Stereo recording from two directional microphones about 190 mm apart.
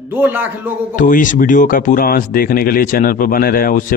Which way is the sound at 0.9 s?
45° left (ahead or behind).